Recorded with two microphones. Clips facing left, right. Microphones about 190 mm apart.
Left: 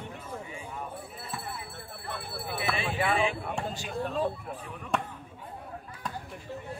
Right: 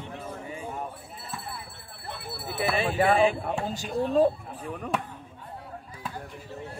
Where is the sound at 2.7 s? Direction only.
40° right (ahead or behind).